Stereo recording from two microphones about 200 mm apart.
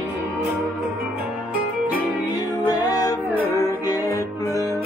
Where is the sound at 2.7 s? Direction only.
20° left (ahead or behind).